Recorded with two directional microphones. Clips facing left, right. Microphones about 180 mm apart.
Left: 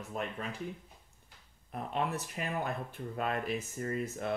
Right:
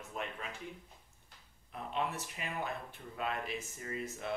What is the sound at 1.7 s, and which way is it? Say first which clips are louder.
Speech: left 3 dB; 45° left (ahead or behind).